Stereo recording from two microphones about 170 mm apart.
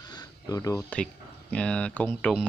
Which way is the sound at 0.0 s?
20° left (ahead or behind).